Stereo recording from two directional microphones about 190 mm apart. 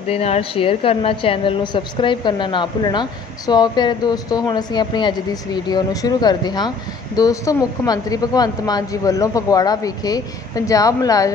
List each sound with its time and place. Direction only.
0.1 s a woman's voice: 30° left (ahead or behind)